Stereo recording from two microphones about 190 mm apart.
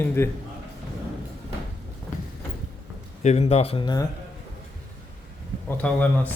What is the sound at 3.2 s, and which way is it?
Speech, 35° left (ahead or behind).